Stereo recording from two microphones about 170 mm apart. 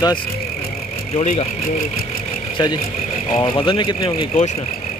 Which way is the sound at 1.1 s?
40° left (ahead or behind).